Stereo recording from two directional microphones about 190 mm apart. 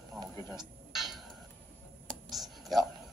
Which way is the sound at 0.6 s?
Centre (ahead or behind).